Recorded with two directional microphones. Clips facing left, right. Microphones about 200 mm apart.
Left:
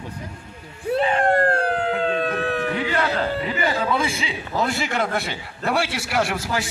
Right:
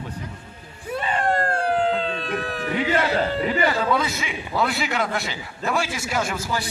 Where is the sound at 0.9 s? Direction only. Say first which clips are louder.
Left 4 dB; 55° left (ahead or behind).